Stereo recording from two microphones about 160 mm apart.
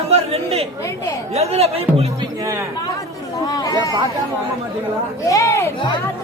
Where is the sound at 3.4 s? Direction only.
20° left (ahead or behind).